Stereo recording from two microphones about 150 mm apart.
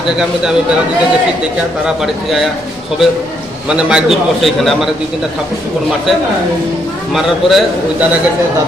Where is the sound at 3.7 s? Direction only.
5° right (ahead or behind).